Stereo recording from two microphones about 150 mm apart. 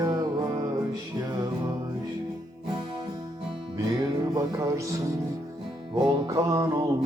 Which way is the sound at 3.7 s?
25° right (ahead or behind).